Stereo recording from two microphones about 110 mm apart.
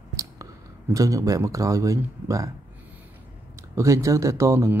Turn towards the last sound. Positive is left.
turn(degrees=-25)  # may be behind; listen again after turning